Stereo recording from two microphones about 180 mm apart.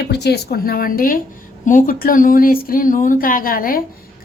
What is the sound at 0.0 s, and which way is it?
A woman's voice, 65° left (ahead or behind).